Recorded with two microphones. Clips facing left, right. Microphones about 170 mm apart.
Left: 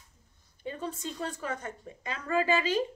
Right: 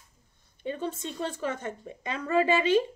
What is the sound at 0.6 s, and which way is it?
A woman's voice, 25° right (ahead or behind).